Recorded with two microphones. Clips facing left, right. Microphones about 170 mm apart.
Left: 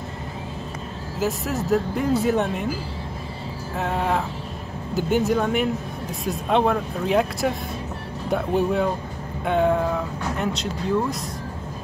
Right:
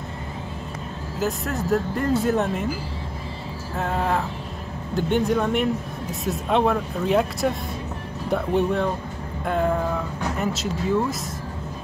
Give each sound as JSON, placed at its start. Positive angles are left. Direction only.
{"t": 1.2, "sound": "speech", "side_deg": 0}
{"t": 3.7, "sound": "speech", "side_deg": 0}